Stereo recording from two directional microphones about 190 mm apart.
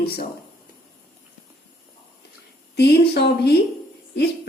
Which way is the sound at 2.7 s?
55° left (ahead or behind).